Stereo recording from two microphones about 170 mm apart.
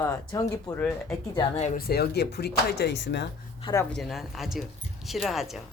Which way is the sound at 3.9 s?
Centre (ahead or behind).